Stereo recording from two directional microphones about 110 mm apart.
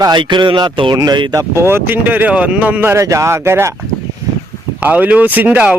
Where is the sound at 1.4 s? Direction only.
25° right (ahead or behind).